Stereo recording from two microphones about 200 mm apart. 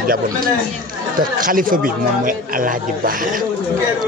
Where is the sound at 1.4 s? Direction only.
45° right (ahead or behind).